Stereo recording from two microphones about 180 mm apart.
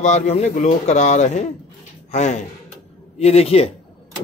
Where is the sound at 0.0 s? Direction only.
40° left (ahead or behind).